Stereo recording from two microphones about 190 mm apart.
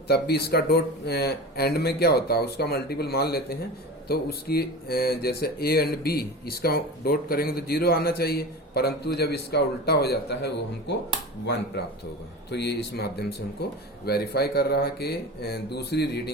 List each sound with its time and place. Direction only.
0.1 s speech: 60° left (ahead or behind)
12.5 s speech: 60° left (ahead or behind)